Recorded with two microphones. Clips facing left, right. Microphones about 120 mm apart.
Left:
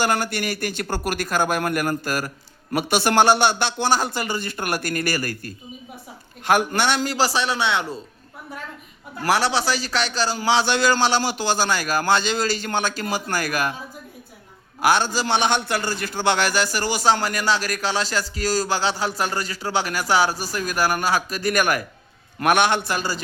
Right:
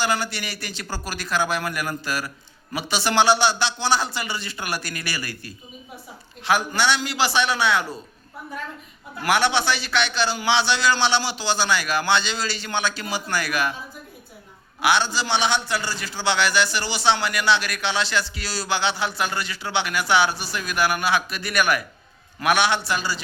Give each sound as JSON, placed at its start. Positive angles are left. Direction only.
{"t": 0.0, "sound": "a man's voice", "side_deg": 50}
{"t": 9.2, "sound": "a man's voice", "side_deg": 35}
{"t": 14.8, "sound": "a man's voice", "side_deg": 45}